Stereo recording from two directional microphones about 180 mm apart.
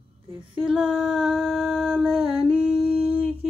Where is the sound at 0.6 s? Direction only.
Centre (ahead or behind).